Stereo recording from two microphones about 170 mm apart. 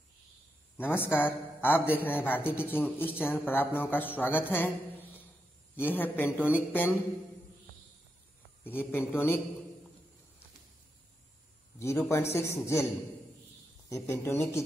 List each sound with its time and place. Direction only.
0.7 s speech: 10° left (ahead or behind)
5.8 s speech: 10° left (ahead or behind)
8.6 s speech: 10° left (ahead or behind)
11.8 s speech: 15° left (ahead or behind)
13.8 s speech: 15° left (ahead or behind)